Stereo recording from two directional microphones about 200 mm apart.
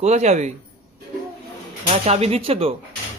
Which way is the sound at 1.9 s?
30° right (ahead or behind).